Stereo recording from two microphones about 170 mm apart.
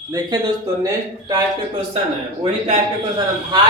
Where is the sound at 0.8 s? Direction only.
20° right (ahead or behind).